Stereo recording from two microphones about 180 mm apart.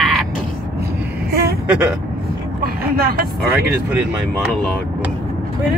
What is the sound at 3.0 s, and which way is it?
Speech, 55° right (ahead or behind).